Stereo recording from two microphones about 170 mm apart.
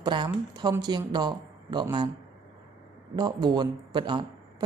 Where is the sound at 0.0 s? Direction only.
25° right (ahead or behind).